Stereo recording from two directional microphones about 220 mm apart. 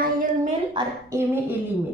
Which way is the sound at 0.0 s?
35° right (ahead or behind).